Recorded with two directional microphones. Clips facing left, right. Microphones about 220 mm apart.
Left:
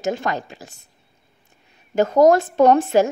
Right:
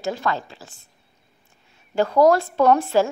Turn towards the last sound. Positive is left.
turn(degrees=20)  # may be behind; listen again after turning